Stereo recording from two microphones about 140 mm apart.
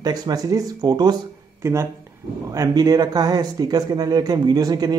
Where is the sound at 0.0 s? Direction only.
30° right (ahead or behind).